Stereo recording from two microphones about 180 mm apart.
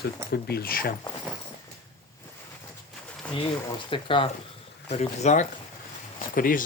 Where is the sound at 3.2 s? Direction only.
5° left (ahead or behind).